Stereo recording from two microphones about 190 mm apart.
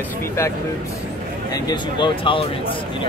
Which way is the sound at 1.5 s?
25° left (ahead or behind).